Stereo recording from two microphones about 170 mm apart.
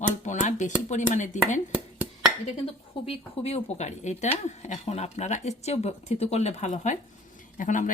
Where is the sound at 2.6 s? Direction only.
35° left (ahead or behind).